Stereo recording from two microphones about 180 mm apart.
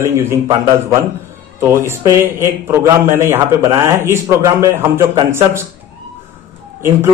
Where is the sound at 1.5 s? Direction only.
15° right (ahead or behind).